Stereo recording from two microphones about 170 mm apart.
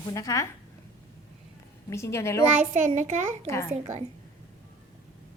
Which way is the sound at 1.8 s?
15° left (ahead or behind).